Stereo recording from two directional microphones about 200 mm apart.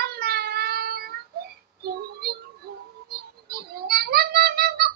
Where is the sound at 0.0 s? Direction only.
50° right (ahead or behind).